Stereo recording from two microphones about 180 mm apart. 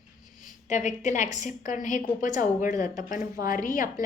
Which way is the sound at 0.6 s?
40° left (ahead or behind).